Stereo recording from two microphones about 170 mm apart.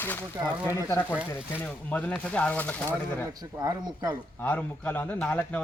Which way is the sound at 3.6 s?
20° right (ahead or behind).